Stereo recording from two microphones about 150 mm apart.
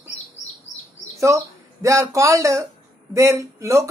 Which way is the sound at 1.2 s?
20° right (ahead or behind).